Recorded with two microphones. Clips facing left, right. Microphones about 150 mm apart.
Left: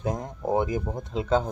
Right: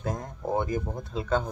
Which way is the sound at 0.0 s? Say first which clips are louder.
Left 3 dB; 20° left (ahead or behind).